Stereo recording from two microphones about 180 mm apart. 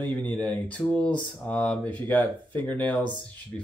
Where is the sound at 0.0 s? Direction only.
10° left (ahead or behind).